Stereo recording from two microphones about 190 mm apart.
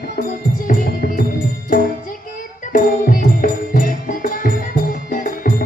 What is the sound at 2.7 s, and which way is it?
Music, 45° left (ahead or behind).